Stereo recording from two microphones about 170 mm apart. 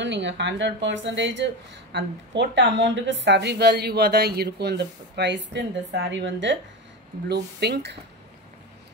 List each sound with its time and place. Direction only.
0.0 s speech: 90° right
7.2 s speech: 75° right (ahead or behind)